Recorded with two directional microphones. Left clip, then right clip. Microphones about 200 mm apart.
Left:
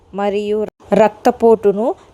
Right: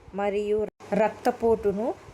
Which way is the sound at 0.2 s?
40° left (ahead or behind).